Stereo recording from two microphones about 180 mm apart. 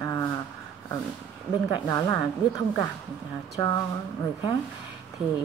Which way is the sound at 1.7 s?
20° left (ahead or behind).